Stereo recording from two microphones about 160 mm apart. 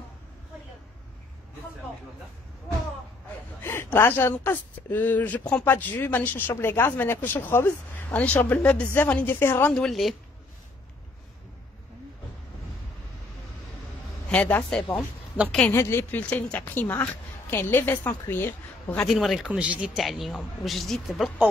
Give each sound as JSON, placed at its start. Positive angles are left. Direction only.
{"t": 3.6, "sound": "speech", "side_deg": 15}
{"t": 14.3, "sound": "speech", "side_deg": 5}
{"t": 19.0, "sound": "speech", "side_deg": 0}